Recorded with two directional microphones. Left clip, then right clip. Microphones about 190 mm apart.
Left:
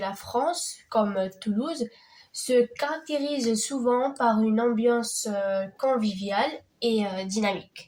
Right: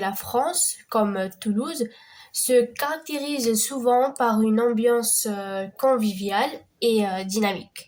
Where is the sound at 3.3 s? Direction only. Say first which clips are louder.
Right 3 dB; 35° right (ahead or behind).